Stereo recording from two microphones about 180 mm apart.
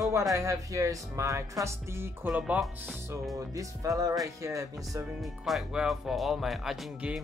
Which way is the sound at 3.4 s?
20° right (ahead or behind).